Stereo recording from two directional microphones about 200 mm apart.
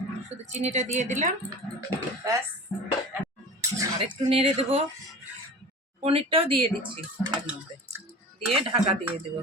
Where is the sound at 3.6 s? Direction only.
15° right (ahead or behind).